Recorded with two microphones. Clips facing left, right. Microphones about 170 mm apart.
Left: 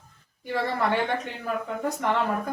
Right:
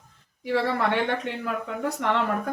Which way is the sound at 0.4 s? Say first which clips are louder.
Right 2 dB; 75° right (ahead or behind).